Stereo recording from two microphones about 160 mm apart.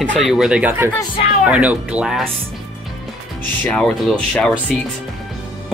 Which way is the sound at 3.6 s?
5° left (ahead or behind).